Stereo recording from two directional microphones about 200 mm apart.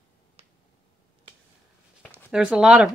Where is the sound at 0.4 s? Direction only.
30° right (ahead or behind).